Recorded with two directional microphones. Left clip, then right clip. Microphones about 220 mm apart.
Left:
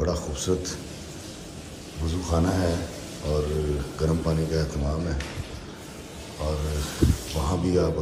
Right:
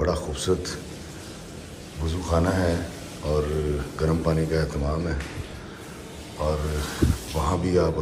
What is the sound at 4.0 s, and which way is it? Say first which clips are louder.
Speech: right 3 dB; 15° left (ahead or behind).